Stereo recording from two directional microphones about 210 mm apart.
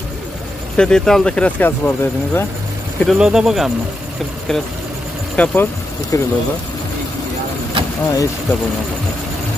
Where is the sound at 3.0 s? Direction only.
Centre (ahead or behind).